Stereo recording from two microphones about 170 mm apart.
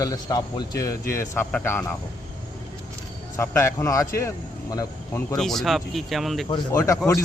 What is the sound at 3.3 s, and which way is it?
Speech, 15° left (ahead or behind).